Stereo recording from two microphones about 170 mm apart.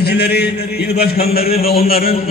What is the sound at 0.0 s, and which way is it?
A man's voice, 70° left (ahead or behind).